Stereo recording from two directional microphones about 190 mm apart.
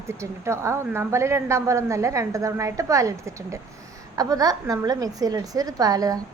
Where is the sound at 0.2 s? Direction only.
15° right (ahead or behind).